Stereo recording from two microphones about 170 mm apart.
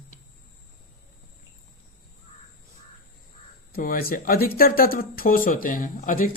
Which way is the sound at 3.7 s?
55° left (ahead or behind).